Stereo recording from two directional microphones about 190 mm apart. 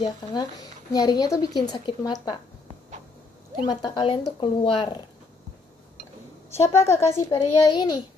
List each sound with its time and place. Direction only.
0.0 s speech: 25° left (ahead or behind)
3.6 s speech: 25° left (ahead or behind)
6.5 s a child's voice: 15° left (ahead or behind)